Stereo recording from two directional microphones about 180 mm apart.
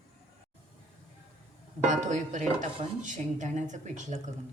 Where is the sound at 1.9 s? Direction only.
40° right (ahead or behind).